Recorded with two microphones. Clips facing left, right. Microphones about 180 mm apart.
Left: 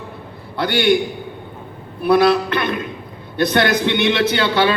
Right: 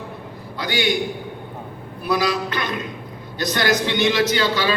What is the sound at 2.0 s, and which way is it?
A man's voice, 60° left (ahead or behind).